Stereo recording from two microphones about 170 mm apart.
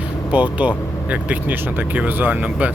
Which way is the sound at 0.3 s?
10° right (ahead or behind).